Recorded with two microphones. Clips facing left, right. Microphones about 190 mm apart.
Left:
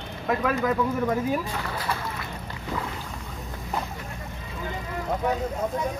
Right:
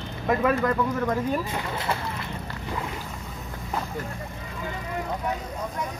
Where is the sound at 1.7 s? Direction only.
25° right (ahead or behind).